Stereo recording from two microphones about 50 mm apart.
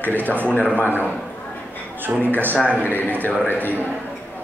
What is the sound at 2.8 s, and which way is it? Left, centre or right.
Speech, left.